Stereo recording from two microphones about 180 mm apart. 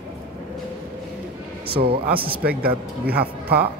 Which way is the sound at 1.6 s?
60° right (ahead or behind).